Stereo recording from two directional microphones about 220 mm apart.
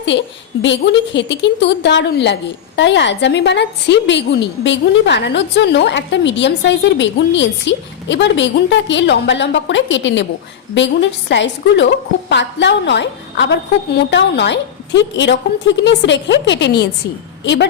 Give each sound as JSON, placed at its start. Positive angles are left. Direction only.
{"t": 0.6, "sound": "a woman's voice", "side_deg": 55}